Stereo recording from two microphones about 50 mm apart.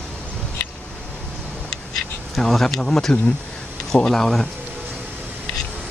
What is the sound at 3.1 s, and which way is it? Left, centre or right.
Speech, centre.